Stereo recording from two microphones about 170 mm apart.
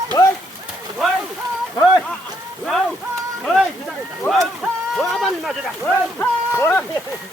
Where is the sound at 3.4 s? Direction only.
Centre (ahead or behind).